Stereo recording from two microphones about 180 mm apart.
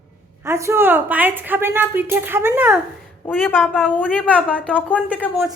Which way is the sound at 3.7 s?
10° left (ahead or behind).